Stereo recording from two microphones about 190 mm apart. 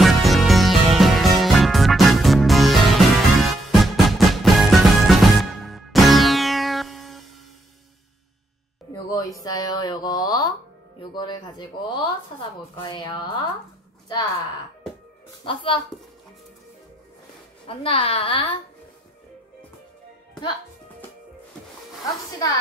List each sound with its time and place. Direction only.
0.0 s music: centre (ahead or behind)
8.9 s music: 20° left (ahead or behind)
9.4 s a sound: 20° left (ahead or behind)
11.0 s speech: 25° left (ahead or behind)
15.4 s speech: 25° left (ahead or behind)
17.6 s speech: 30° left (ahead or behind)